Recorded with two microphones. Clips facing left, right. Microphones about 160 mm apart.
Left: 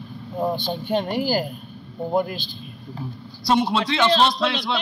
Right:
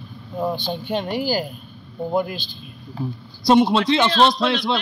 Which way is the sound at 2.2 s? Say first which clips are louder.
Left 1 dB; 45° left (ahead or behind).